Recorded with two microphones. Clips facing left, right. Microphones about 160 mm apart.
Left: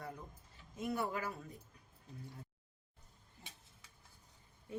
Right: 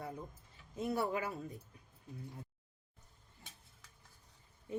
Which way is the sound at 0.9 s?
20° right (ahead or behind).